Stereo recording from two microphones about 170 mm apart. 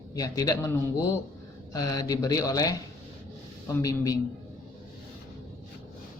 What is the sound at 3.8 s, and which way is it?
Speech, 20° left (ahead or behind).